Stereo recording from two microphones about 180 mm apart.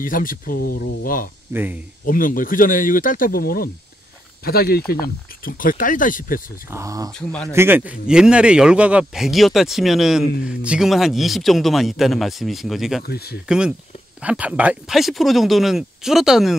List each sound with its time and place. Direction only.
0.0 s speech: 50° left (ahead or behind)
1.5 s speech: 10° right (ahead or behind)
2.0 s speech: 50° left (ahead or behind)
6.7 s speech: 15° right (ahead or behind)
7.1 s speech: 5° left (ahead or behind)
7.5 s speech: 10° right (ahead or behind)
13.0 s speech: 60° left (ahead or behind)
13.5 s speech: 5° right (ahead or behind)